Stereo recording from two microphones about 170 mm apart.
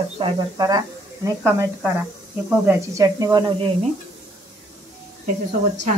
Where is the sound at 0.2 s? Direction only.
25° right (ahead or behind).